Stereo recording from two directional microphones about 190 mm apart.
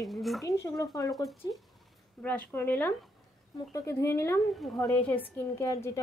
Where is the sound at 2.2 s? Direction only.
10° left (ahead or behind).